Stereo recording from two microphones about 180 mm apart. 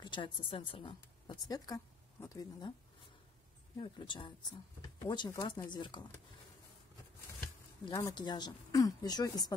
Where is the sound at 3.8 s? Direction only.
25° left (ahead or behind).